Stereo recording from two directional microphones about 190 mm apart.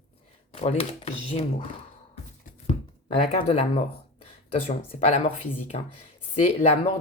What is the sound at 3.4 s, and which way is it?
Speech, 35° left (ahead or behind).